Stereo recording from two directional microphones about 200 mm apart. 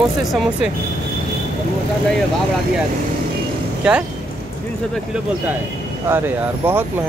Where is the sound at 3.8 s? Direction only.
5° right (ahead or behind).